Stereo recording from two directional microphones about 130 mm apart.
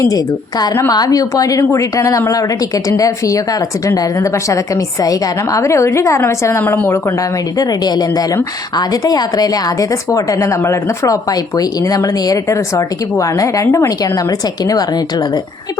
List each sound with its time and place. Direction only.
0.0 s a woman's voice: 30° left (ahead or behind)